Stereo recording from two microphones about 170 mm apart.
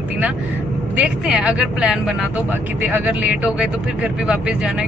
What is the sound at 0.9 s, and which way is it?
Speech, 5° right (ahead or behind).